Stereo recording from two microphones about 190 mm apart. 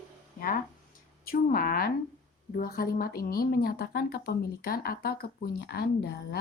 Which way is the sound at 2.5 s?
50° left (ahead or behind).